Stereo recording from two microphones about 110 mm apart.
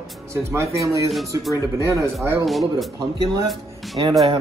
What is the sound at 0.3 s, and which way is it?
Speech, 25° right (ahead or behind).